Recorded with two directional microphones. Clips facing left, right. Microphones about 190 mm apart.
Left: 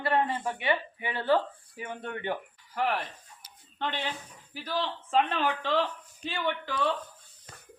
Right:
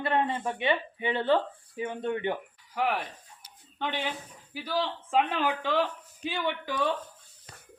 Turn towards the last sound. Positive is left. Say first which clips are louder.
# right 1 dB
turn(degrees=-15)  # may be behind; listen again after turning